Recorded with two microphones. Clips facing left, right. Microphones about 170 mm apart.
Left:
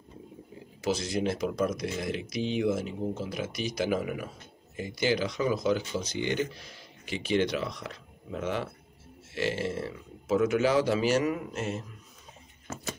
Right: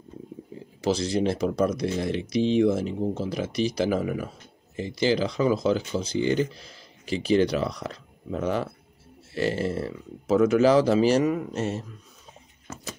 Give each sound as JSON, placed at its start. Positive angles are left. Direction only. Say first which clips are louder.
{"t": 0.7, "sound": "speech", "louder": "right 5 dB", "side_deg": -35}